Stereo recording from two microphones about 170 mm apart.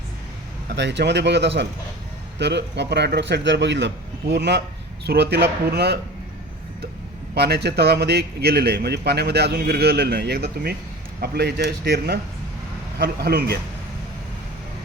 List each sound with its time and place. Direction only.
0.8 s a man's voice: 90° right; by 6.0 s 70° right (ahead or behind)
7.3 s a man's voice: 75° right (ahead or behind)